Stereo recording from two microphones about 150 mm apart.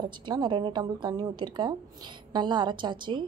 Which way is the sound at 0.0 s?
30° right (ahead or behind).